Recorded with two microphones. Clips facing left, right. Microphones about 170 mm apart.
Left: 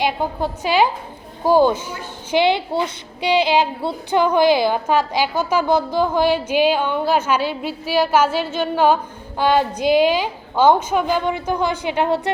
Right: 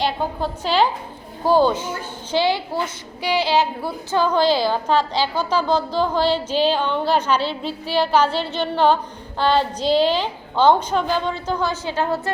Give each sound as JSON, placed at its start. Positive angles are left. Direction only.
{"t": 0.0, "sound": "a woman's voice", "side_deg": 15}